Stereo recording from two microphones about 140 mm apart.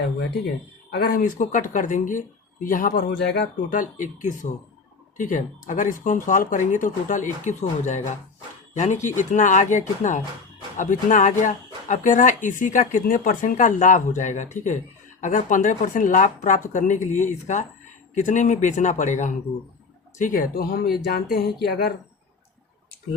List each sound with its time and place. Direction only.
0.9 s speech: 90° left